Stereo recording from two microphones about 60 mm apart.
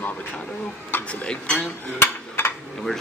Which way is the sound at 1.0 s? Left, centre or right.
Centre.